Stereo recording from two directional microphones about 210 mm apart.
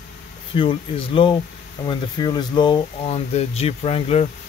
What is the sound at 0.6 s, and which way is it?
Speech, 25° left (ahead or behind).